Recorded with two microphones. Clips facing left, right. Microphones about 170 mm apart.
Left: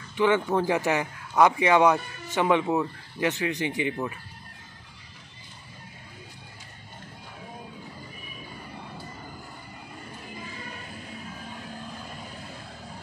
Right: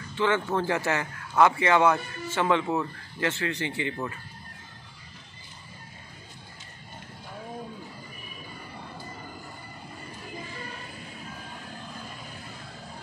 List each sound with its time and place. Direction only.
0.1 s speech: 15° left (ahead or behind)